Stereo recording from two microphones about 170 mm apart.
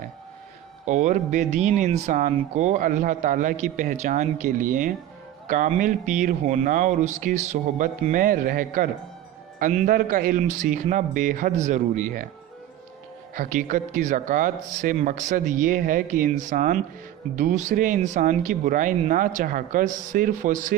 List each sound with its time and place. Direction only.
0.9 s speech: 45° right (ahead or behind)
13.3 s speech: 50° right (ahead or behind)